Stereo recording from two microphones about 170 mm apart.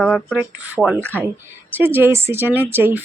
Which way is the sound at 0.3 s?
10° right (ahead or behind).